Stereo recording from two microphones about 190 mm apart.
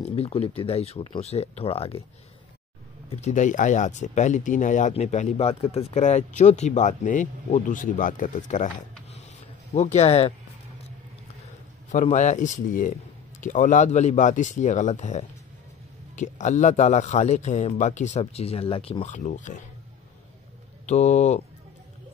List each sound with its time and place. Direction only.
0.0 s speech: 30° left (ahead or behind)
3.1 s speech: 35° left (ahead or behind)
9.8 s speech: 35° left (ahead or behind)
11.9 s speech: 40° left (ahead or behind)
20.8 s speech: 35° left (ahead or behind)